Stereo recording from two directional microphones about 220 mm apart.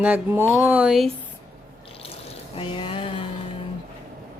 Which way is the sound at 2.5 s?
25° left (ahead or behind).